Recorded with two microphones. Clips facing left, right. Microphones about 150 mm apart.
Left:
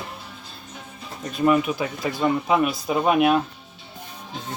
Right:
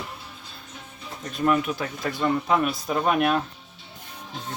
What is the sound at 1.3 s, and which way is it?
Speech, 5° left (ahead or behind).